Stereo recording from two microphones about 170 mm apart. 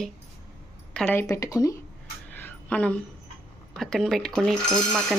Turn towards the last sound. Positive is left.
turn(degrees=0)  # may be behind; listen again after turning